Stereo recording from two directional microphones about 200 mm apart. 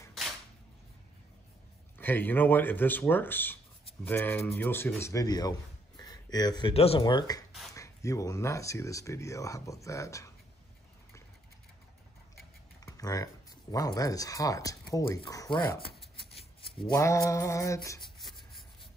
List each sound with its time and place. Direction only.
2.0 s speech: 10° left (ahead or behind)
12.8 s speech: 15° left (ahead or behind)
16.2 s shuffling cards: 30° left (ahead or behind)
16.9 s speech: 15° left (ahead or behind)